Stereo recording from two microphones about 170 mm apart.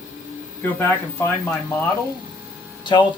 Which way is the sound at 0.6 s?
15° left (ahead or behind).